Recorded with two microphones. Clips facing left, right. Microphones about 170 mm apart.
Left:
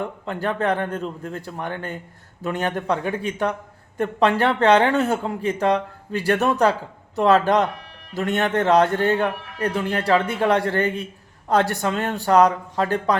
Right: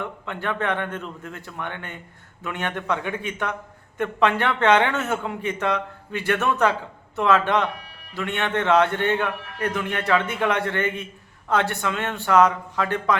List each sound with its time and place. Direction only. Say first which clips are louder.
0.0 s a man's voice: left 4 dB; 35° left (ahead or behind)